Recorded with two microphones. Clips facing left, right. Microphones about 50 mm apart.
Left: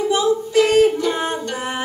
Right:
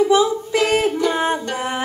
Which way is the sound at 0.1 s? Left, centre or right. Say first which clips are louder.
Right 1 dB; right.